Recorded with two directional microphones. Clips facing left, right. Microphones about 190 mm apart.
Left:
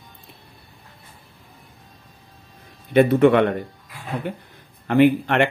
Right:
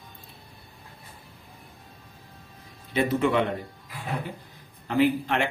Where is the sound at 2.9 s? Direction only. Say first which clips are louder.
Left 9 dB; 60° left (ahead or behind).